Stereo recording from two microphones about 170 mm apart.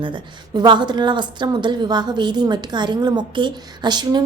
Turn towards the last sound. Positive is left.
turn(degrees=-25)  # may be behind; listen again after turning